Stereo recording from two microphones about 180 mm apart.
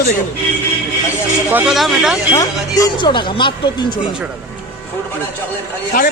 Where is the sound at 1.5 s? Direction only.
Centre (ahead or behind).